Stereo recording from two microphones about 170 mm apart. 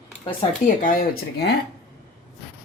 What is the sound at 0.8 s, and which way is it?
Speech, 60° left (ahead or behind).